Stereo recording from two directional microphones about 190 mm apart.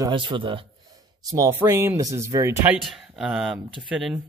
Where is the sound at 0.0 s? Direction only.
25° right (ahead or behind).